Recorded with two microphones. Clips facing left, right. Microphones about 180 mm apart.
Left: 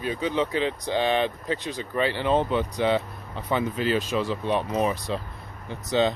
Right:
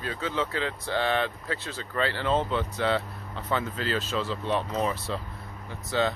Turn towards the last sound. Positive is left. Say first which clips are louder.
# left 4 dB
turn(degrees=20)  # may be behind; listen again after turning